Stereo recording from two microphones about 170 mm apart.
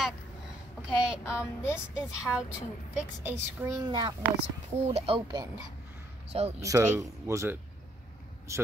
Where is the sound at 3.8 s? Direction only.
25° right (ahead or behind).